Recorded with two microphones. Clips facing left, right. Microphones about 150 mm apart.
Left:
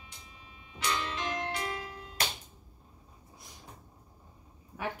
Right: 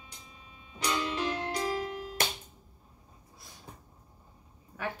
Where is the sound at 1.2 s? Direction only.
35° right (ahead or behind).